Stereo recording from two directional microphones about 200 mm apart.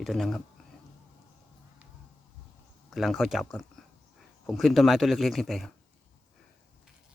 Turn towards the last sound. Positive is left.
turn(degrees=0)  # may be behind; listen again after turning